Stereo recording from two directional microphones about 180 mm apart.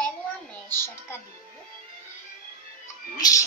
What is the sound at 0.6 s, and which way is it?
Music, 15° left (ahead or behind).